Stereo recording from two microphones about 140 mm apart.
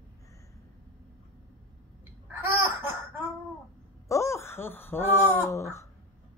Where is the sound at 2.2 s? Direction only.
15° right (ahead or behind).